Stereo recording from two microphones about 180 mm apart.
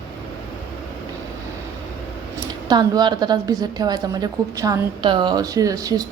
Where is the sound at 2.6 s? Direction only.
25° right (ahead or behind).